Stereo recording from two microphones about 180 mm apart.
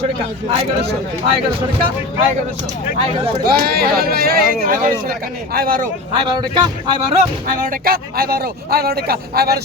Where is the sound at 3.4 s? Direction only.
55° right (ahead or behind).